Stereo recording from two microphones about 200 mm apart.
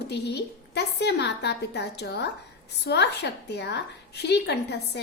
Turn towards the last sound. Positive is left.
turn(degrees=55)  # may be behind; listen again after turning